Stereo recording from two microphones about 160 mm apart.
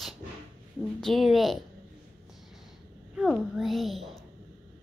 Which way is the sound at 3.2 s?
Centre (ahead or behind).